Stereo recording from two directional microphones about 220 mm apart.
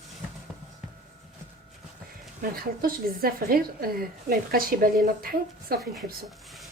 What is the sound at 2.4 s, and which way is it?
A woman's voice, 40° right (ahead or behind).